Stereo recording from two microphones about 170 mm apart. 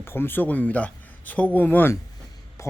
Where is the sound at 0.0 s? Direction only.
15° left (ahead or behind).